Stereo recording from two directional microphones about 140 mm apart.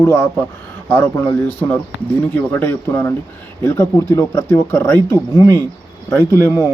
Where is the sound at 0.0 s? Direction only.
15° left (ahead or behind).